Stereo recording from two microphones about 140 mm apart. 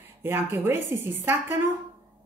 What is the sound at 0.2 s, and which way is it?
Speech, 15° right (ahead or behind).